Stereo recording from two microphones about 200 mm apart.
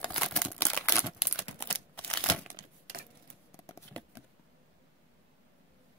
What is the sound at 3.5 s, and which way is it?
Shuffling cards, 15° left (ahead or behind).